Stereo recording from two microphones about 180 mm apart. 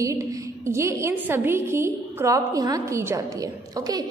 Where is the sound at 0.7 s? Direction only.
15° right (ahead or behind).